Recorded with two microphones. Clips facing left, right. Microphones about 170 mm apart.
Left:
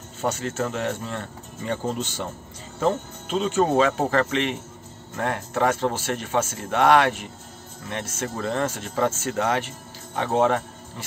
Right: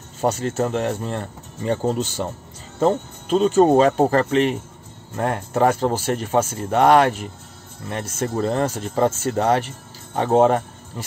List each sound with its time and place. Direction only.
0.2 s speech: 35° right (ahead or behind)
2.8 s speech: 40° right (ahead or behind)